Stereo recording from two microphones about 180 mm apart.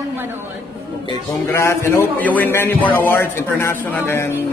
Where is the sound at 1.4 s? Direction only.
15° left (ahead or behind).